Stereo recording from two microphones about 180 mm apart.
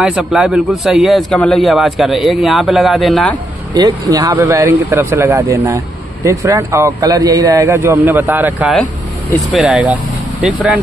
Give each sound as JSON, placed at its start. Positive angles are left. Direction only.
{"t": 0.0, "sound": "a man's voice", "side_deg": -5}
{"t": 3.7, "sound": "a man's voice", "side_deg": -20}